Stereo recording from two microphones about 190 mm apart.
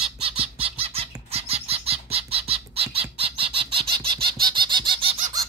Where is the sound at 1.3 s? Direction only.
30° right (ahead or behind).